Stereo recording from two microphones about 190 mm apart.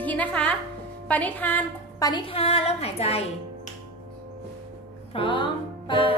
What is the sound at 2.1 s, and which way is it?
A woman's voice, 30° left (ahead or behind).